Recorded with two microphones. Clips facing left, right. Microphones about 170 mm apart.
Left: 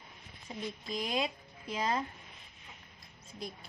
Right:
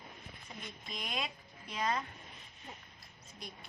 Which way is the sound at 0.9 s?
30° left (ahead or behind).